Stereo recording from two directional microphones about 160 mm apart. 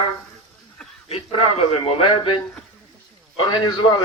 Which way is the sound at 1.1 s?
40° left (ahead or behind).